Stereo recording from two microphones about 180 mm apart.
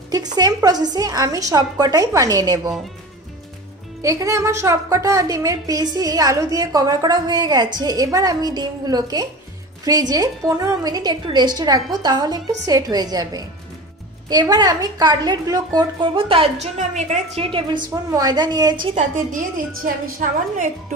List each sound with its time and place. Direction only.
0.1 s a woman's voice: 20° right (ahead or behind)
4.0 s a woman's voice: 20° right (ahead or behind)
16.7 s a woman's voice: 40° right (ahead or behind)
17.5 s a woman's voice: 25° right (ahead or behind)
18.8 s a woman's voice: 50° right (ahead or behind)